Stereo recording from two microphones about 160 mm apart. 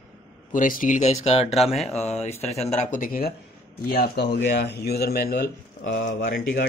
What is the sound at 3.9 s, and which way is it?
Speech, 80° left.